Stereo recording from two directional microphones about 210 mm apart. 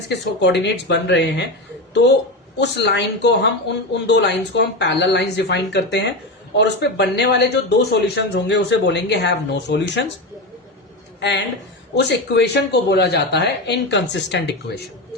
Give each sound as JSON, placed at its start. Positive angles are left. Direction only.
{"t": 0.1, "sound": "speech", "side_deg": 55}
{"t": 2.6, "sound": "speech", "side_deg": 55}
{"t": 11.2, "sound": "speech", "side_deg": 55}